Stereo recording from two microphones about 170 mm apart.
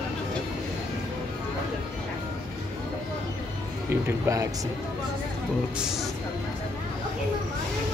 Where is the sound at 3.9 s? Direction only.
15° right (ahead or behind).